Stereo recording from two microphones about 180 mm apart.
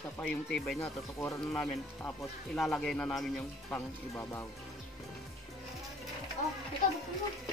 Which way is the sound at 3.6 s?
15° left (ahead or behind).